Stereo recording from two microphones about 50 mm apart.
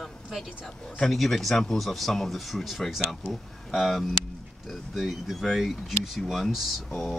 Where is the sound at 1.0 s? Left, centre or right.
Centre.